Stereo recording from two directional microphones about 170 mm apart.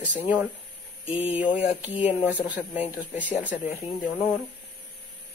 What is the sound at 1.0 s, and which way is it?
Speech, 35° left (ahead or behind).